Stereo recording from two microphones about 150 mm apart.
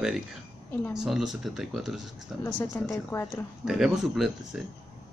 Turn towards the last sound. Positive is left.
turn(degrees=0)  # may be behind; listen again after turning